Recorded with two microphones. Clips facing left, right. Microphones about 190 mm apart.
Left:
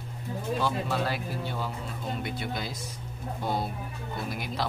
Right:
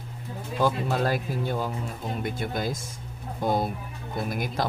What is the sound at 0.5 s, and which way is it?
Speech, 45° right (ahead or behind).